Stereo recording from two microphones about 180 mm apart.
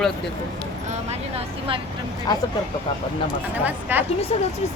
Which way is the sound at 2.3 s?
20° left (ahead or behind).